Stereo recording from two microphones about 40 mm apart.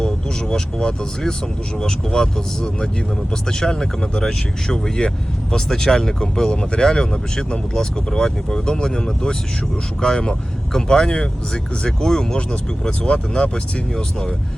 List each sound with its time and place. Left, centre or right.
0.0 s speech: left